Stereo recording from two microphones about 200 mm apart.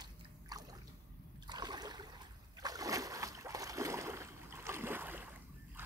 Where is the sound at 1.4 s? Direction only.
20° right (ahead or behind).